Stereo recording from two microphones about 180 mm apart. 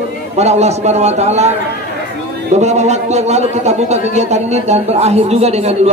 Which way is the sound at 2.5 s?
40° right (ahead or behind).